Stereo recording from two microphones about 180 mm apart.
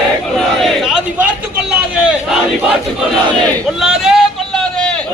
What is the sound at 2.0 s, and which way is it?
Crowd, 5° right (ahead or behind).